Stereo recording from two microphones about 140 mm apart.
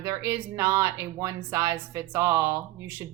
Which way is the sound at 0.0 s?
20° right (ahead or behind).